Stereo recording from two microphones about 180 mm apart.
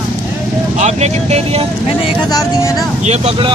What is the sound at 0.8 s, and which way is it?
Speech, 40° right (ahead or behind).